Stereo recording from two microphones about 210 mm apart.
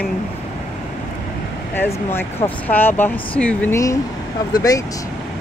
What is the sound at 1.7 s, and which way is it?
Speech, 10° left (ahead or behind).